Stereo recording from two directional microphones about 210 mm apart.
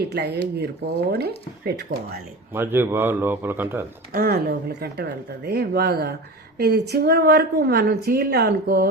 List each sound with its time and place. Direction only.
0.1 s a woman's voice: 50° right (ahead or behind)
1.9 s a woman's voice: 45° right (ahead or behind)
2.5 s speech: 10° right (ahead or behind)
4.1 s a woman's voice: 45° right (ahead or behind)